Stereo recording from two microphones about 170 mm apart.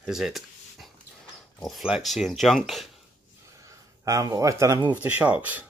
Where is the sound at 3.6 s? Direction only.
20° right (ahead or behind).